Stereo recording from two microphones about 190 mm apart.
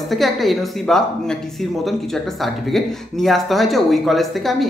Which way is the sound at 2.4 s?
Centre (ahead or behind).